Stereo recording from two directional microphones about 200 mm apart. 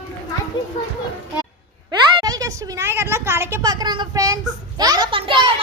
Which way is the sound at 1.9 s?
20° right (ahead or behind).